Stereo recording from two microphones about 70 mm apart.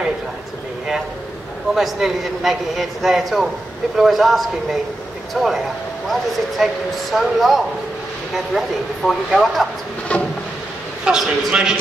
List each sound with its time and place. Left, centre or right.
1.8 s a man's voice: centre
6.6 s a man's voice: centre
10.1 s a sound: centre
11.1 s a man's voice: centre